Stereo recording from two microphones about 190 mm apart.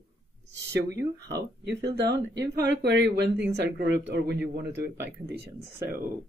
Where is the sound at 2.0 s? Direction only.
65° right (ahead or behind).